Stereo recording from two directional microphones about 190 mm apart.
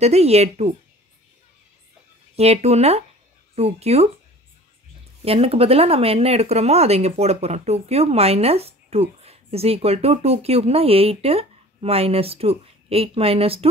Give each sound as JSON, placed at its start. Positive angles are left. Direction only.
{"t": 0.0, "sound": "speech", "side_deg": -35}
{"t": 2.3, "sound": "speech", "side_deg": -35}
{"t": 5.2, "sound": "speech", "side_deg": -30}